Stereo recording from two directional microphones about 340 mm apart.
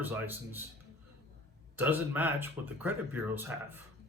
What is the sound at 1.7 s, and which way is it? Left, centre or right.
Speech, centre.